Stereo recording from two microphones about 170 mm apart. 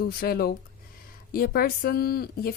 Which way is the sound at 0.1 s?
60° left (ahead or behind).